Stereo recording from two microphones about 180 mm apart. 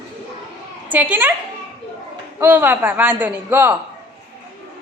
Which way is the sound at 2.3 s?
10° right (ahead or behind).